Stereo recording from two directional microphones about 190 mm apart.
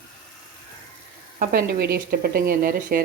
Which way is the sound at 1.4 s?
55° right (ahead or behind).